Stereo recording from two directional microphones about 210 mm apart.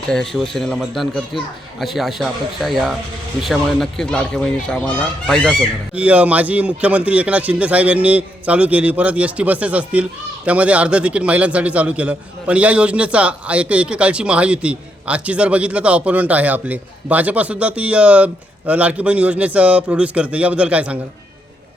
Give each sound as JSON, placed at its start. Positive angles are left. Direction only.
{"t": 0.1, "sound": "fowl", "side_deg": 0}
{"t": 5.9, "sound": "a man's voice", "side_deg": -5}